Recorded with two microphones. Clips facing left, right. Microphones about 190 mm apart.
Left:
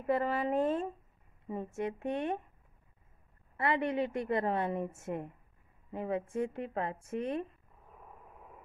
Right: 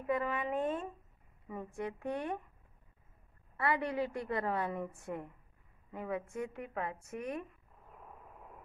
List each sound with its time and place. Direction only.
0.0 s a woman's voice: 35° left (ahead or behind)
1.5 s a woman's voice: 25° left (ahead or behind)
3.5 s a woman's voice: 20° left (ahead or behind)
7.9 s vehicle: centre (ahead or behind)